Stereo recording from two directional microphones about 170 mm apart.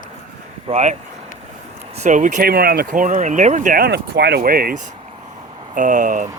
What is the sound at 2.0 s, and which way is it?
Speech, 45° right (ahead or behind).